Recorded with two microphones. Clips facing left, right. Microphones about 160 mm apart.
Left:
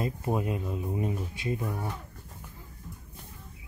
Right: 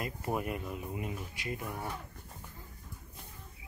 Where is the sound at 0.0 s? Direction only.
20° left (ahead or behind).